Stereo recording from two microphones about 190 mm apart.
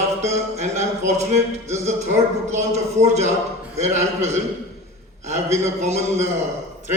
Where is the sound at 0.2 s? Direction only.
35° right (ahead or behind).